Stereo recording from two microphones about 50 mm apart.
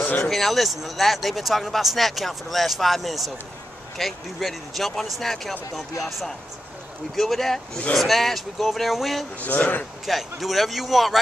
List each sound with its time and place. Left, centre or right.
0.2 s speech: centre
9.4 s speech: left
10.0 s speech: centre